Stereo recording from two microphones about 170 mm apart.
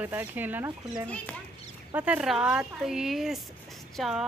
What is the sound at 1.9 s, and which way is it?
Speech, 10° right (ahead or behind).